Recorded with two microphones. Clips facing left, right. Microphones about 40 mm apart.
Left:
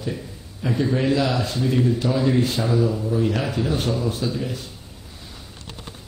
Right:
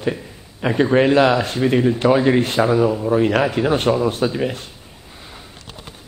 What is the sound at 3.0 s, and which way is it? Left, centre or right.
Speech, right.